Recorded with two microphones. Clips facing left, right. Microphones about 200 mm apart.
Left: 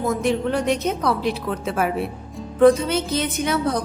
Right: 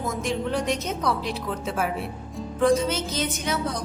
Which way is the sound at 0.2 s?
60° left (ahead or behind).